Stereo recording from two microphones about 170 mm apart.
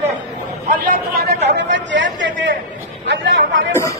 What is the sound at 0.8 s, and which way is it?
Chatter, 70° right (ahead or behind).